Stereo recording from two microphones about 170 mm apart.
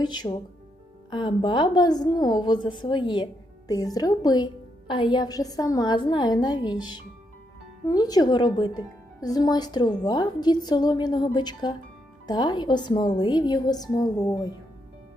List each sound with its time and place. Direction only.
0.0 s a woman's voice: 25° left (ahead or behind)